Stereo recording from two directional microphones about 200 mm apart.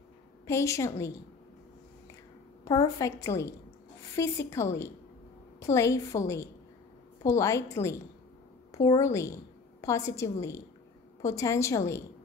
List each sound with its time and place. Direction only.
0.5 s a woman's voice: 15° left (ahead or behind)
2.6 s a woman's voice: 20° left (ahead or behind)